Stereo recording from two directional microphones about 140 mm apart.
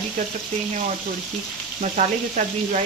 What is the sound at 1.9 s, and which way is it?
Speech, 65° right (ahead or behind).